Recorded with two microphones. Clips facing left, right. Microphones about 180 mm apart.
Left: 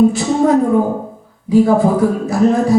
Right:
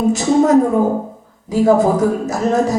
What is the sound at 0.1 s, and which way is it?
A woman's voice, 45° right (ahead or behind).